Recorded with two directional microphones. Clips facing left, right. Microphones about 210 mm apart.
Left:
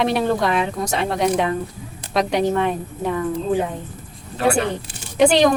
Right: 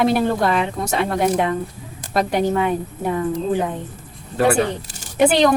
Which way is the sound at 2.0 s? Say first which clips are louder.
Even; 50° right (ahead or behind).